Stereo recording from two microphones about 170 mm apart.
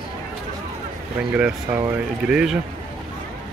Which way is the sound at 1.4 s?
10° right (ahead or behind).